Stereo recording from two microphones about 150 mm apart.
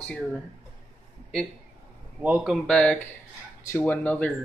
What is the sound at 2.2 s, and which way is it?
Speech, 10° right (ahead or behind).